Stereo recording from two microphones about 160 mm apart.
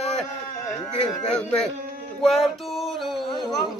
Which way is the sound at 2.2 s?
Centre (ahead or behind).